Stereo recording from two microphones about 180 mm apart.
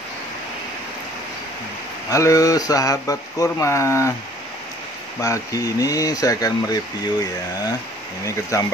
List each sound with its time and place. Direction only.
2.0 s speech: 20° left (ahead or behind)
5.2 s speech: 20° left (ahead or behind)
8.5 s speech: 15° left (ahead or behind)